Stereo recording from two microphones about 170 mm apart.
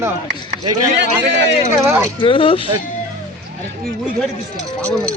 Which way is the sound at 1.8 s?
15° right (ahead or behind).